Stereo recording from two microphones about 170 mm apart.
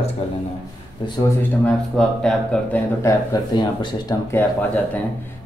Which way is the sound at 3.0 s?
20° left (ahead or behind).